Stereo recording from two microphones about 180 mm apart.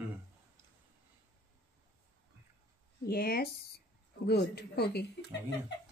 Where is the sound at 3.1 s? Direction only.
55° left (ahead or behind).